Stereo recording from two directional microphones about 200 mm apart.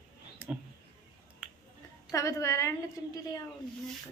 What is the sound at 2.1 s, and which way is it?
Speech, 15° left (ahead or behind).